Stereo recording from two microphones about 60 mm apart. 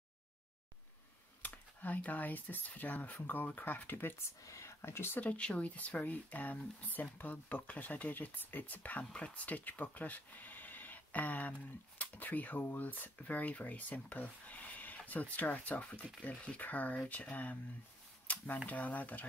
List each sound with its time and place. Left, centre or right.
1.4 s speech: left
4.5 s speech: left
5.2 s speech: left
18.2 s camera: left
18.7 s speech: left